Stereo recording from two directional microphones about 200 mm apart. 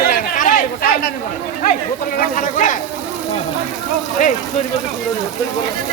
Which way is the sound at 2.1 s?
40° left (ahead or behind).